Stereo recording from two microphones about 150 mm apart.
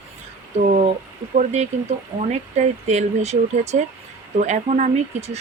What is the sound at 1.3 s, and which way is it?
Speech, 50° right (ahead or behind).